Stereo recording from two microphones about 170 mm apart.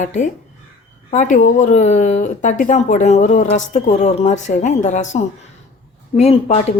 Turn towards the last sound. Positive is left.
turn(degrees=40)  # may be behind; listen again after turning